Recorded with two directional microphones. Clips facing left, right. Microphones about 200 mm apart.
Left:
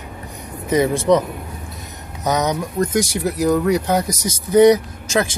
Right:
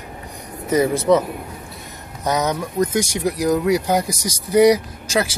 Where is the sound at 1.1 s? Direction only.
5° right (ahead or behind).